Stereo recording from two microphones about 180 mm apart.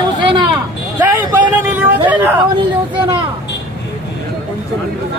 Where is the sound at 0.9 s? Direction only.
10° right (ahead or behind).